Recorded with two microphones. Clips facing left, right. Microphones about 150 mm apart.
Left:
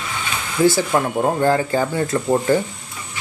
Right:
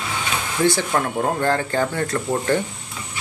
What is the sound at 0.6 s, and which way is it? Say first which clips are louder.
Speech: left 4 dB; 5° left (ahead or behind).